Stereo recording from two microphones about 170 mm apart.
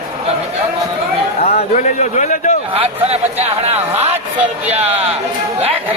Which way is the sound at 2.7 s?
35° right (ahead or behind).